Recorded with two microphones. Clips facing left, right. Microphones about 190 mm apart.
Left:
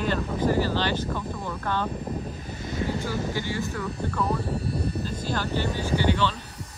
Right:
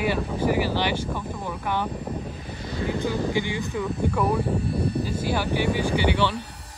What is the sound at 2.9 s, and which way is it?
Speech, 15° right (ahead or behind).